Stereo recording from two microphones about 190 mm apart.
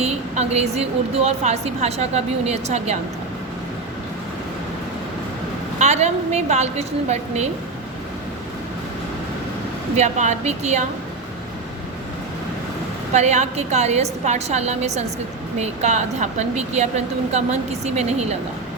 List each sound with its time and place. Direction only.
0.0 s a woman's voice: 35° right (ahead or behind)
5.8 s a woman's voice: 35° right (ahead or behind)
10.0 s a woman's voice: 35° right (ahead or behind)
13.1 s a woman's voice: 35° right (ahead or behind)